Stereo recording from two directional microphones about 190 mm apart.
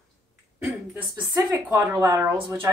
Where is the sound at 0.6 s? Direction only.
10° right (ahead or behind).